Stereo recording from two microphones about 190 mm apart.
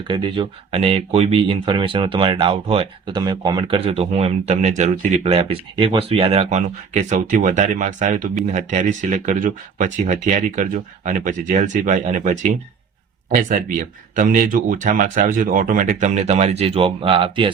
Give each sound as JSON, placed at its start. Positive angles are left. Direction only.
{"t": 0.1, "sound": "speech", "side_deg": -25}